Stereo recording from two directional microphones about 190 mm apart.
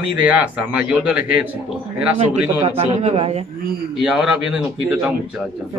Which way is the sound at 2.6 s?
35° right (ahead or behind).